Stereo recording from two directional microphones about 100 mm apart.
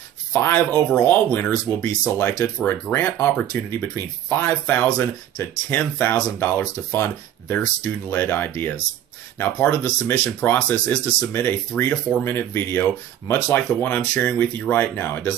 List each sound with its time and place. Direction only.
0.3 s speech: 20° left (ahead or behind)
0.7 s speech: 5° left (ahead or behind); by 15.3 s 20° left (ahead or behind)